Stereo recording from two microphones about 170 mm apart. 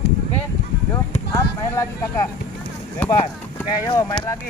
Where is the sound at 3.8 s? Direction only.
30° left (ahead or behind).